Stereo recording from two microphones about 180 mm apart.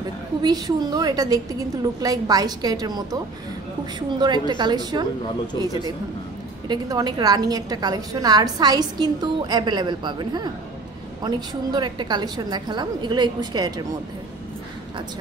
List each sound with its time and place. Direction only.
0.4 s a woman's voice: 20° right (ahead or behind)
4.2 s a woman's voice: 25° right (ahead or behind)